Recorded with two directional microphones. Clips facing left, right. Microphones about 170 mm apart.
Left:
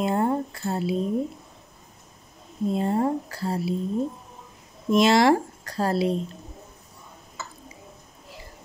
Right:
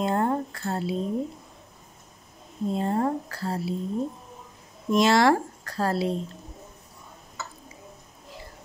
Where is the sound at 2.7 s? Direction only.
10° left (ahead or behind).